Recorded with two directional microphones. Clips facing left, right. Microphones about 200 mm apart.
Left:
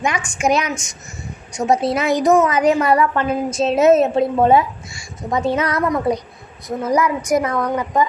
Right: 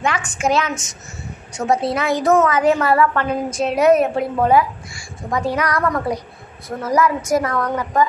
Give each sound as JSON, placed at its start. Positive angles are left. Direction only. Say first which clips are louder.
{"t": 0.0, "sound": "a woman's voice", "louder": "left 1 dB", "side_deg": 15}